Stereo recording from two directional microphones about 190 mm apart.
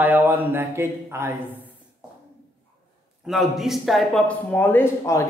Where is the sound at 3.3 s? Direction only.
Centre (ahead or behind).